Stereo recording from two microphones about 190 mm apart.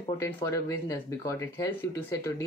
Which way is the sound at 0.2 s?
15° left (ahead or behind).